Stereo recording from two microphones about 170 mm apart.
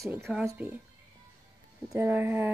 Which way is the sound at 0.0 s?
15° right (ahead or behind).